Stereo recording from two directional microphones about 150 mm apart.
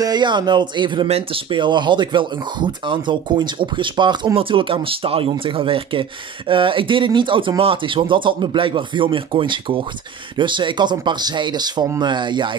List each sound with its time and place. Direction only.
0.0 s speech: 30° right (ahead or behind)